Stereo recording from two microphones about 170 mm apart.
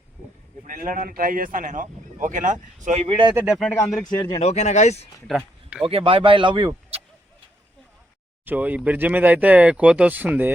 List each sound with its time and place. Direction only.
0.7 s a man's voice: 55° right (ahead or behind)
3.1 s speech: 30° right (ahead or behind)
3.3 s speech: 5° right (ahead or behind)
3.8 s a man's voice: 20° left (ahead or behind); by 5.0 s 40° left (ahead or behind)
5.3 s speech: centre (ahead or behind)
5.9 s speech: 30° right (ahead or behind)
8.4 s speech: 10° right (ahead or behind)